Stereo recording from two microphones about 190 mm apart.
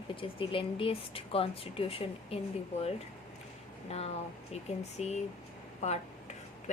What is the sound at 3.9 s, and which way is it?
Speech, 35° left (ahead or behind).